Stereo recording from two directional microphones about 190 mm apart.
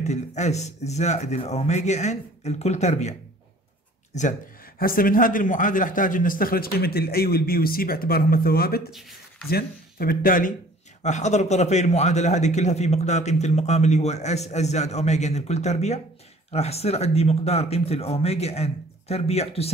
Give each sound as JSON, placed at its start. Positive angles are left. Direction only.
{"t": 0.0, "sound": "a man's voice", "side_deg": 35}
{"t": 11.0, "sound": "speech", "side_deg": 40}